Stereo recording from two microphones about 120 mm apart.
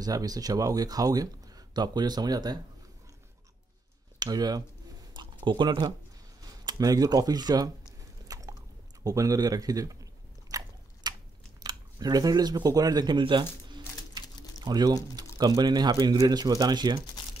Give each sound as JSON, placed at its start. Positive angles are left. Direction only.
{"t": 0.0, "sound": "speech", "side_deg": -30}
{"t": 4.2, "sound": "speech", "side_deg": -35}
{"t": 5.1, "sound": "a sound", "side_deg": -40}
{"t": 6.6, "sound": "speech", "side_deg": -35}
{"t": 8.3, "sound": "a sound", "side_deg": -30}
{"t": 9.0, "sound": "speech", "side_deg": -30}
{"t": 10.5, "sound": "biting", "side_deg": -30}
{"t": 11.6, "sound": "speech", "side_deg": -35}